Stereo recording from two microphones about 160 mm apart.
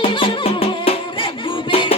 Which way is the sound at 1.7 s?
35° left (ahead or behind).